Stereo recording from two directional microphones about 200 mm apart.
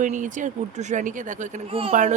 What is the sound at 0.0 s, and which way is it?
Speech, 40° right (ahead or behind).